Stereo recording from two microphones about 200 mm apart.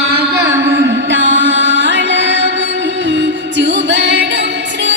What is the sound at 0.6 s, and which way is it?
Music, 65° right (ahead or behind).